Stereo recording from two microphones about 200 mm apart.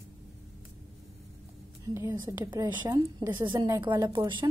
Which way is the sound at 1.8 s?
15° right (ahead or behind).